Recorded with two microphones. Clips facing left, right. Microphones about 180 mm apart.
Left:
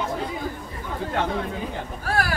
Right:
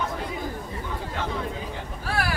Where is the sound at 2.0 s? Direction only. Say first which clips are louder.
Left 3 dB; 45° left (ahead or behind).